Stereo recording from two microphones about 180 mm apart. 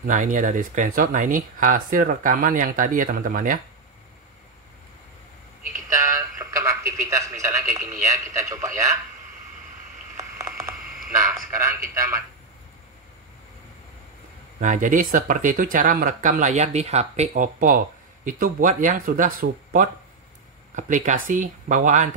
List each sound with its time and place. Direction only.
0.0 s speech: 45° right (ahead or behind)
5.9 s a man's voice: 15° right (ahead or behind)
10.1 s a sound: 15° right (ahead or behind)
11.5 s a man's voice: 15° right (ahead or behind)
14.6 s speech: 45° right (ahead or behind)